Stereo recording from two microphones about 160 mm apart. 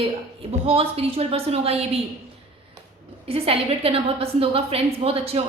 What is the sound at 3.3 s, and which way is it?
A woman's voice, 35° right (ahead or behind).